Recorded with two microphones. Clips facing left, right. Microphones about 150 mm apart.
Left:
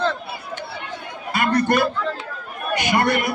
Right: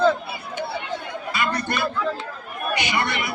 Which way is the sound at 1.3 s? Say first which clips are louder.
Left 7 dB; 50° left (ahead or behind).